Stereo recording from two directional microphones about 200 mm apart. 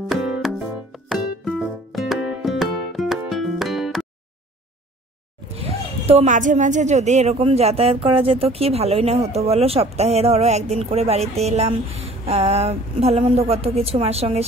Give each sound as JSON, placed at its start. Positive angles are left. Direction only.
{"t": 0.1, "sound": "music", "side_deg": 0}
{"t": 6.0, "sound": "a woman's voice", "side_deg": -35}